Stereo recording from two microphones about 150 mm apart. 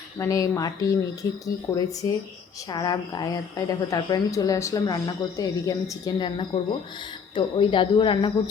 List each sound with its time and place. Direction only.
0.2 s a woman's voice: 20° left (ahead or behind)